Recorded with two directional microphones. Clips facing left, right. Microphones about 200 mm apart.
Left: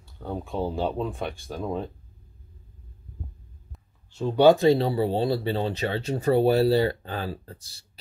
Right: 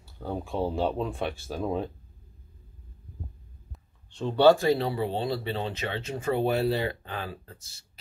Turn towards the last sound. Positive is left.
turn(degrees=35)  # may be behind; listen again after turning